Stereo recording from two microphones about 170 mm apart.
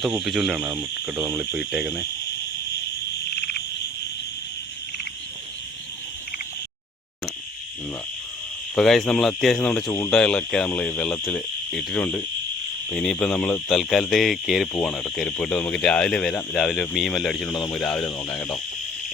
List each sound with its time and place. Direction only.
0.0 s speech: centre (ahead or behind)
3.3 s frog: 70° left (ahead or behind)
8.7 s speech: centre (ahead or behind)